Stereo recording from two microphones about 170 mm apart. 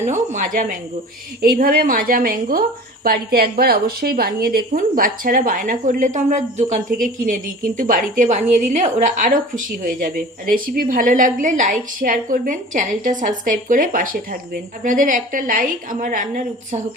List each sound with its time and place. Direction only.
0.0 s a woman's voice: 45° right (ahead or behind)